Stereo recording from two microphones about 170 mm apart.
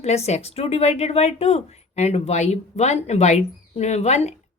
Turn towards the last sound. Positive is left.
turn(degrees=40)  # may be behind; listen again after turning